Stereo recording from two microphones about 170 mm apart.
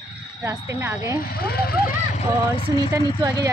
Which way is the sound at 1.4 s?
65° left (ahead or behind).